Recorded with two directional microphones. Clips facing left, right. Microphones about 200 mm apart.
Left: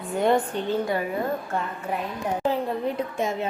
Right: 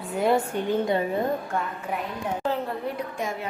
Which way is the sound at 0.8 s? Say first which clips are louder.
Right 2 dB; 25° right (ahead or behind).